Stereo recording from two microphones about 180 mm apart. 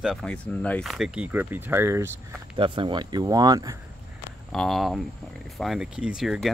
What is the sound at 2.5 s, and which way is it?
Speech, 30° right (ahead or behind).